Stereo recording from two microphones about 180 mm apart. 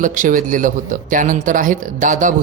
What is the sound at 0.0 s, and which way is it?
Speech, 45° right (ahead or behind).